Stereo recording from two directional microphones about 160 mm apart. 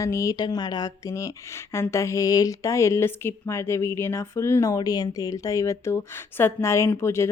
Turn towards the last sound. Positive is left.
turn(degrees=15)  # may be behind; listen again after turning